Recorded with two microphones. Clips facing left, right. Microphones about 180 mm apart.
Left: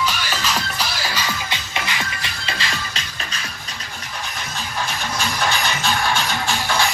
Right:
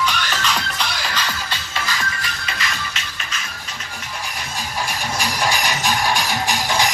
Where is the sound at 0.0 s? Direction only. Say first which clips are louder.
Right 1 dB; 5° left (ahead or behind).